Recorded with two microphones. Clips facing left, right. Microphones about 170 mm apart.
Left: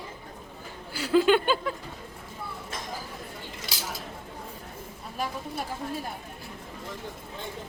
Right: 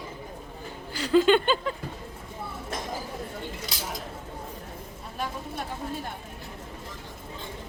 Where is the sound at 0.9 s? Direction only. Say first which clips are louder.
Right 1 dB; 10° left (ahead or behind).